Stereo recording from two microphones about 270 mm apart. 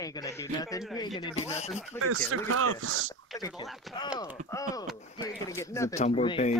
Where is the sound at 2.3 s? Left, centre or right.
Right.